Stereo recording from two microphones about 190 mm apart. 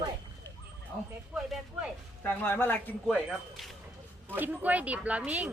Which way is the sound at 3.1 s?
Centre (ahead or behind).